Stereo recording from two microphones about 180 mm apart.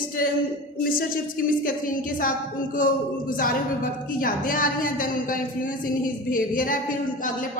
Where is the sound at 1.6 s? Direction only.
50° left (ahead or behind).